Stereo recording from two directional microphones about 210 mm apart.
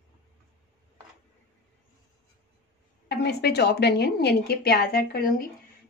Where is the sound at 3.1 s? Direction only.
50° left (ahead or behind).